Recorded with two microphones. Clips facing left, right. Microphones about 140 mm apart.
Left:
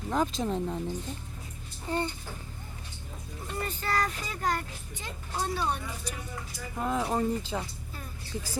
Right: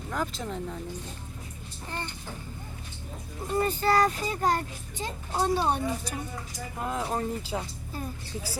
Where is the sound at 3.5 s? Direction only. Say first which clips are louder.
Right 7 dB; 30° right (ahead or behind).